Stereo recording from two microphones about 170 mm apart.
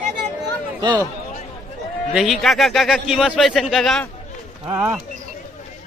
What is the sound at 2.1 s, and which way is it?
A man's voice, centre (ahead or behind).